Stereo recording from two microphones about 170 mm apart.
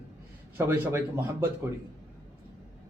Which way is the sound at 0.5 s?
15° right (ahead or behind).